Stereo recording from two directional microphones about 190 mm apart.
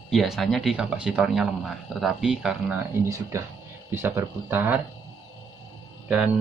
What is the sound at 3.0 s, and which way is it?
Speech, 15° right (ahead or behind).